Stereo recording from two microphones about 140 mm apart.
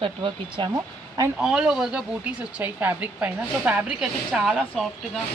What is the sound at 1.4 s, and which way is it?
Speech, 5° right (ahead or behind).